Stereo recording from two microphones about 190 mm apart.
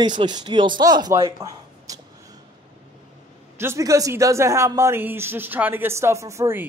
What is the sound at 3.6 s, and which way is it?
Speech, 15° right (ahead or behind).